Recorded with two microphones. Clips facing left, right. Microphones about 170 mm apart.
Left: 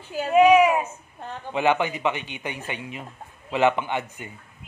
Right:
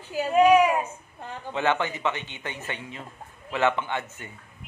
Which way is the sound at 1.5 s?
15° left (ahead or behind).